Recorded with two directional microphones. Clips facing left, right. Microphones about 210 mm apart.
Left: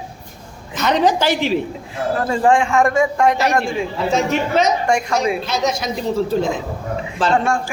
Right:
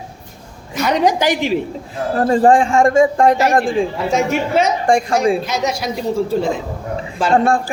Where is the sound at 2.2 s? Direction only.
35° right (ahead or behind).